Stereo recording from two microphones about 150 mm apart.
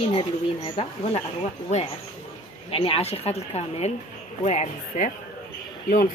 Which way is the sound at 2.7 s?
40° left (ahead or behind).